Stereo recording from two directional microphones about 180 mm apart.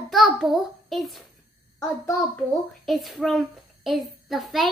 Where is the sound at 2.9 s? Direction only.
Centre (ahead or behind).